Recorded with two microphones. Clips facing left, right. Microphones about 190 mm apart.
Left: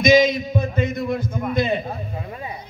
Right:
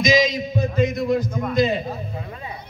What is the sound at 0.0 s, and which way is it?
Music, 55° left (ahead or behind).